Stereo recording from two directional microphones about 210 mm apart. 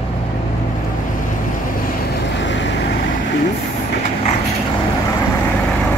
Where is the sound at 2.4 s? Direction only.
60° left (ahead or behind).